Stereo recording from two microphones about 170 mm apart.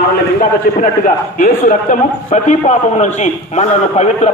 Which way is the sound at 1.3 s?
50° left (ahead or behind).